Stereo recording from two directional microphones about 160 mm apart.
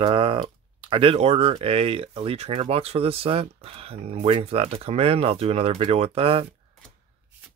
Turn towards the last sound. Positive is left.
turn(degrees=-35)  # may be behind; listen again after turning